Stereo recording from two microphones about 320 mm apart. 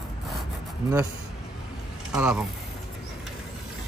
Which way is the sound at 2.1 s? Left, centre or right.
Centre.